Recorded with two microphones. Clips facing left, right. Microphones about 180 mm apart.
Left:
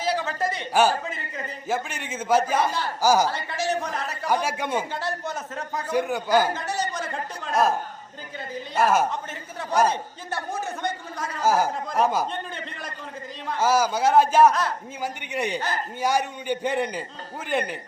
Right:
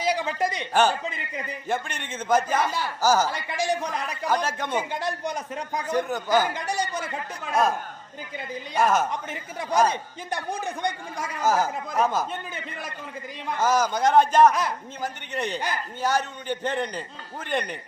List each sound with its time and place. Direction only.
0.0 s a sound: 15° right (ahead or behind)
0.7 s a man's voice: 10° left (ahead or behind)
3.2 s a man's voice: 15° right (ahead or behind)
4.3 s a man's voice: 10° left (ahead or behind)
4.8 s a man's voice: 15° right (ahead or behind)
5.9 s a man's voice: 10° left (ahead or behind)
6.7 s a man's voice: 10° right (ahead or behind)
8.8 s a man's voice: 10° left (ahead or behind)
9.9 s a man's voice: 15° right (ahead or behind)
11.4 s a man's voice: 10° left (ahead or behind)
13.6 s a man's voice: 10° left (ahead or behind)